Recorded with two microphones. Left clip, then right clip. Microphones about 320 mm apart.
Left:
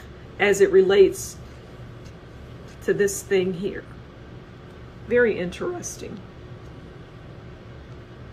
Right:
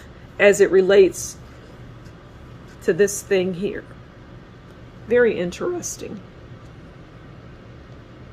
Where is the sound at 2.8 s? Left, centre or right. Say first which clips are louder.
Right 3 dB; right.